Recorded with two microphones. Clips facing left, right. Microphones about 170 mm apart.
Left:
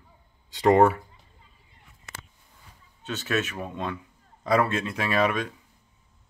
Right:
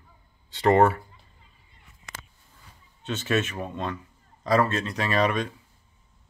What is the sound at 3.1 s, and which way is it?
Speech, centre (ahead or behind).